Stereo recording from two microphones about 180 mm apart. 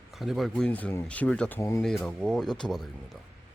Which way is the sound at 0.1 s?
Centre (ahead or behind).